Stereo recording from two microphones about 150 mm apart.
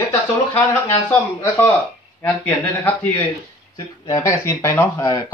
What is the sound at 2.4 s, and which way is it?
Speech, 15° left (ahead or behind).